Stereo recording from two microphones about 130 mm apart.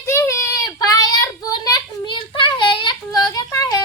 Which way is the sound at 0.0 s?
20° left (ahead or behind).